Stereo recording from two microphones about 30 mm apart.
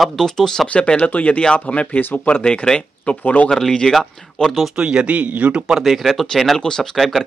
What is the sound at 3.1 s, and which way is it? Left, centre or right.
Speech, left.